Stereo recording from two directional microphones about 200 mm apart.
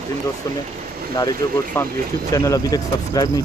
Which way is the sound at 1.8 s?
10° left (ahead or behind).